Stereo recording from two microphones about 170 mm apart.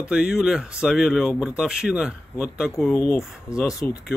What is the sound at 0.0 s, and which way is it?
Speech, 5° right (ahead or behind).